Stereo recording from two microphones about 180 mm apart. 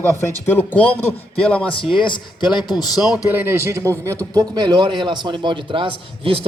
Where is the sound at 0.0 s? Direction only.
10° left (ahead or behind).